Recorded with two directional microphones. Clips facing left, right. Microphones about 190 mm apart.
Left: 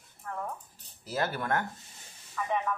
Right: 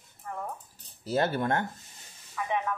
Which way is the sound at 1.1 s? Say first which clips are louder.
Right 4 dB; 30° right (ahead or behind).